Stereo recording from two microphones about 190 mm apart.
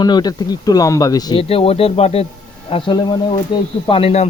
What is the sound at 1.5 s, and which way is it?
Speech, 30° left (ahead or behind).